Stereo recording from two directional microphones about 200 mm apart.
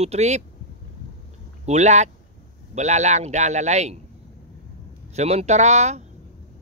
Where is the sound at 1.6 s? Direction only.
35° right (ahead or behind).